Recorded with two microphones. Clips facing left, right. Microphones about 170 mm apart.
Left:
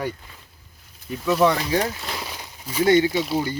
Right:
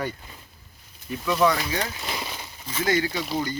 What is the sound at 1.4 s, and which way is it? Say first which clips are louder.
Speech: left 2 dB; 30° left (ahead or behind).